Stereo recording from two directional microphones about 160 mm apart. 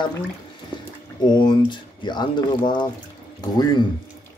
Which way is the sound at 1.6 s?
30° left (ahead or behind).